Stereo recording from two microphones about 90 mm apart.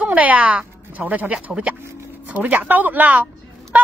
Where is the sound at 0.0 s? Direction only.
15° right (ahead or behind).